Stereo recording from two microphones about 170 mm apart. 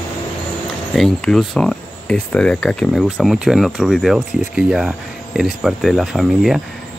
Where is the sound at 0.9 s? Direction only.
5° left (ahead or behind).